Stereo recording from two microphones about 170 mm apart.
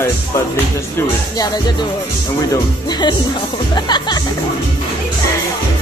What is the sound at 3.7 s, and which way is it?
Music, 25° left (ahead or behind).